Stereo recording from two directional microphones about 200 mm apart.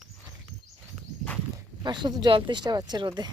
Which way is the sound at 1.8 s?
20° right (ahead or behind).